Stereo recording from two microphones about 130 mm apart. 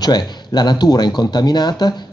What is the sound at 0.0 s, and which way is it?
Speech, 30° left (ahead or behind).